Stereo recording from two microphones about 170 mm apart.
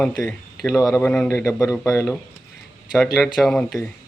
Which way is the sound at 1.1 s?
5° left (ahead or behind).